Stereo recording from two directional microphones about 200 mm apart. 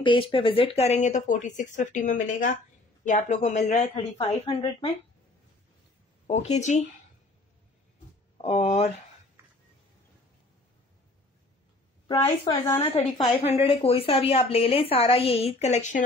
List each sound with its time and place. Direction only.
0.0 s a woman's voice: 25° left (ahead or behind)
6.2 s speech: 35° left (ahead or behind)
8.4 s speech: 30° left (ahead or behind)
12.7 s a woman's voice: 25° left (ahead or behind)